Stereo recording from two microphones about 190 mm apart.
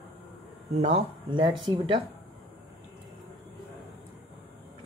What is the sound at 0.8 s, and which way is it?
Speech, 30° right (ahead or behind).